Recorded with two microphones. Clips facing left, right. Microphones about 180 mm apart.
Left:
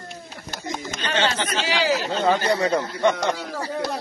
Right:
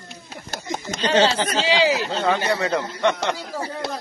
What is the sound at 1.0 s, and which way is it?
Speech, 30° right (ahead or behind).